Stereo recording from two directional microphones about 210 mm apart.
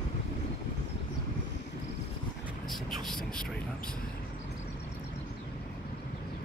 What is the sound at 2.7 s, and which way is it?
Speech, centre (ahead or behind).